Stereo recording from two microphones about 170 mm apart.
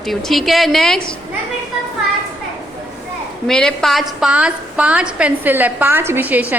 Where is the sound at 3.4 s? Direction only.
Centre (ahead or behind).